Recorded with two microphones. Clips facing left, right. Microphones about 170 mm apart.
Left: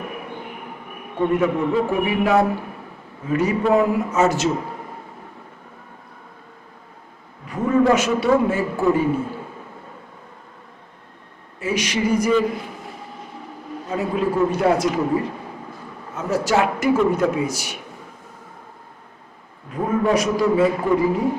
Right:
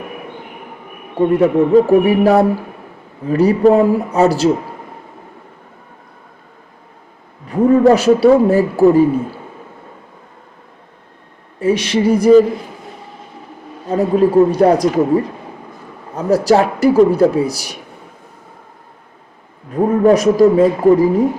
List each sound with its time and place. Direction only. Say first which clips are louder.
1.7 s speech: right 10 dB; 35° right (ahead or behind)
7.5 s speech: right 7 dB; 35° right (ahead or behind)
11.6 s speech: right 8 dB; 30° right (ahead or behind)
13.9 s speech: right 10 dB; 35° right (ahead or behind)
19.7 s speech: right 8 dB; 40° right (ahead or behind)